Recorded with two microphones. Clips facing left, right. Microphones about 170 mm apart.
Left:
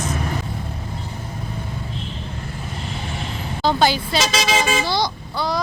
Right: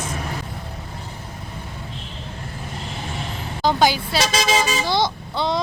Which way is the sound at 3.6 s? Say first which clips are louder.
Even; 15° right (ahead or behind).